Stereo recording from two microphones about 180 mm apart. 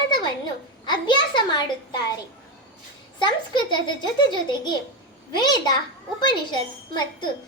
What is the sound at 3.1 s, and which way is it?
A child's voice, 25° left (ahead or behind).